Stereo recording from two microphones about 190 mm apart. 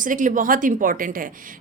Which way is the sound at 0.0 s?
45° right (ahead or behind).